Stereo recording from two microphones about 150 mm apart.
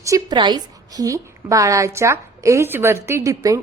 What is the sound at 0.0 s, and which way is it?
A woman's voice, 25° right (ahead or behind).